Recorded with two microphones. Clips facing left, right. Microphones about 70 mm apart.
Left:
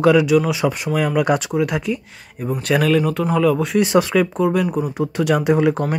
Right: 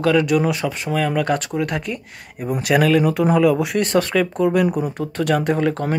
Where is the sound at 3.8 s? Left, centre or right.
Centre.